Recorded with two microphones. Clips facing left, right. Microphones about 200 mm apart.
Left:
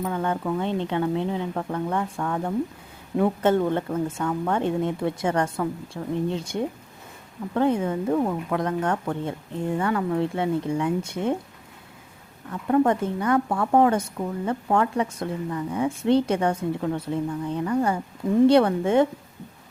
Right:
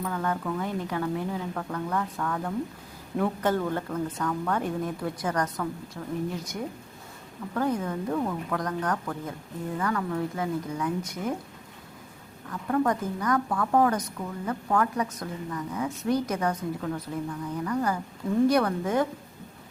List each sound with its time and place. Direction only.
0.0 s a woman's voice: 25° left (ahead or behind)
12.6 s a woman's voice: 25° left (ahead or behind)